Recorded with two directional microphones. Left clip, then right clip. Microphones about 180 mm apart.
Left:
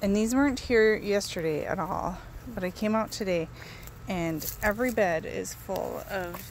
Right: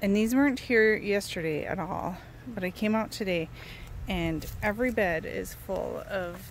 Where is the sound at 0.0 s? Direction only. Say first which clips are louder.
Even; 10° right (ahead or behind).